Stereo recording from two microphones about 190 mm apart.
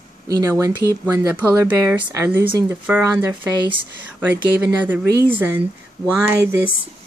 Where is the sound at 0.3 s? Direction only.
20° right (ahead or behind).